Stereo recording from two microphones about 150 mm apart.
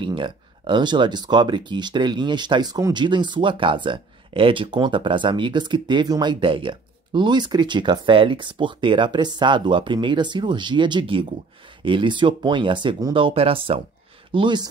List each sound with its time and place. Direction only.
0.0 s speech: 35° right (ahead or behind)